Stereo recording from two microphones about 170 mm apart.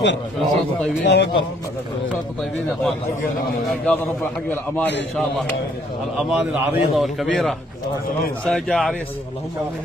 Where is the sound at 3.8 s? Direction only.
10° left (ahead or behind).